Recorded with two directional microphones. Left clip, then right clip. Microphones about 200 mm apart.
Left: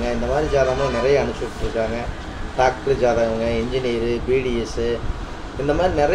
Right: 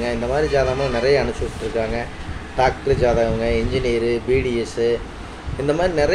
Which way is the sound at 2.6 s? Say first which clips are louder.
Even; 5° right (ahead or behind).